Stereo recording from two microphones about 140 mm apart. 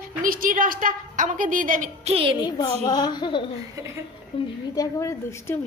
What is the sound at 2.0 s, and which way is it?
Speech, 40° right (ahead or behind).